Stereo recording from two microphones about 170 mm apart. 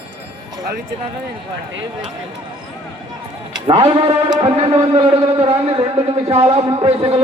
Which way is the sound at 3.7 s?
35° right (ahead or behind).